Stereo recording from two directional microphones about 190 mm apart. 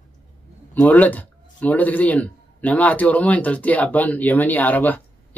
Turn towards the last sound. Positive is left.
turn(degrees=10)  # may be behind; listen again after turning